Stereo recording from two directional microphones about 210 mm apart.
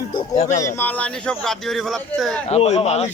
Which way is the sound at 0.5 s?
10° left (ahead or behind).